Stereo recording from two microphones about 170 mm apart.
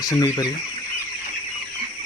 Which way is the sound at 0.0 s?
20° left (ahead or behind).